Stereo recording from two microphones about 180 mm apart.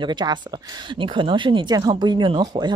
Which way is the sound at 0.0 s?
25° right (ahead or behind).